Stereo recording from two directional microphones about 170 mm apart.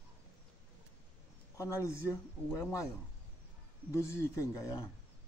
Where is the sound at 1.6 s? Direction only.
15° left (ahead or behind).